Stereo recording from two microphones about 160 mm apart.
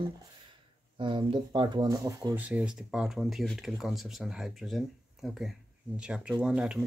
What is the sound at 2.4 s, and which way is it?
Speech, 10° right (ahead or behind).